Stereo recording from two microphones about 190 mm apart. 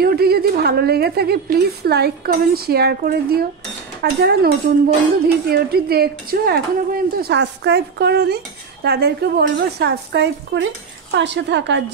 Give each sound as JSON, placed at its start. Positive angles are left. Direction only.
{"t": 0.0, "sound": "a woman's voice", "side_deg": -55}